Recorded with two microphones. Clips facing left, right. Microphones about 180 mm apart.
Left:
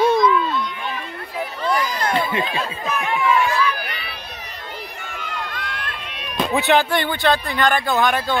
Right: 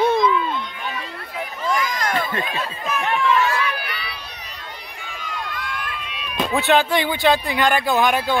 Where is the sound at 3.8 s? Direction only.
45° left (ahead or behind).